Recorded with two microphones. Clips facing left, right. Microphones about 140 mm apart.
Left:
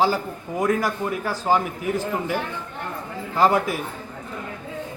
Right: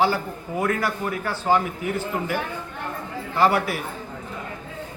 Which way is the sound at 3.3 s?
15° left (ahead or behind).